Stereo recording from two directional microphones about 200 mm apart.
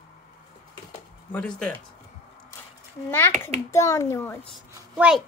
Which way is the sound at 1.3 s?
5° left (ahead or behind).